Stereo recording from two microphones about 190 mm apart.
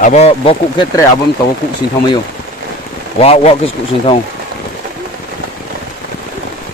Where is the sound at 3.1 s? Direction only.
35° left (ahead or behind).